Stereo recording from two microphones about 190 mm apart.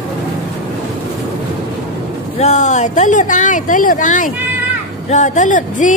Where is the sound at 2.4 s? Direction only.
35° left (ahead or behind).